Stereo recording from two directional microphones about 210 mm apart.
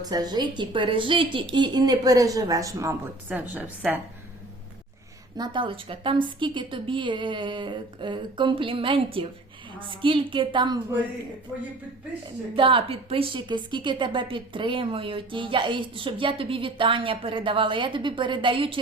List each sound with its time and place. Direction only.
0.0 s a woman's voice: 20° right (ahead or behind)
5.4 s a woman's voice: 25° right (ahead or behind)
11.5 s speech: centre (ahead or behind)
12.5 s a woman's voice: 25° right (ahead or behind)